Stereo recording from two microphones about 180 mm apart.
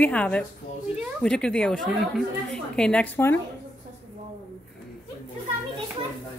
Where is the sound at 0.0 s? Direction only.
5° left (ahead or behind).